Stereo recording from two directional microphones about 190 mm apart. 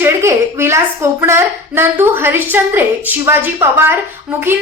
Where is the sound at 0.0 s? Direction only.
15° right (ahead or behind).